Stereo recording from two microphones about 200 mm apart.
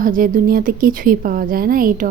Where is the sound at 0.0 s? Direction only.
45° right (ahead or behind).